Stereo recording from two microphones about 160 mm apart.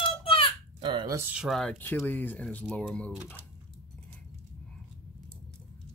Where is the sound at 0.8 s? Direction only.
30° right (ahead or behind).